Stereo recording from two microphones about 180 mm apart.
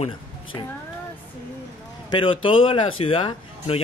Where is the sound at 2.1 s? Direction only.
30° left (ahead or behind).